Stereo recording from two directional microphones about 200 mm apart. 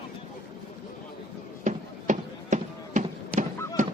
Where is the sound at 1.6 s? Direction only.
40° right (ahead or behind).